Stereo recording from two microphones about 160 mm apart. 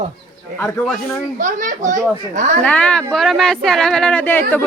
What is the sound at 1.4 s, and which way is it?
A woman's voice, 55° right (ahead or behind).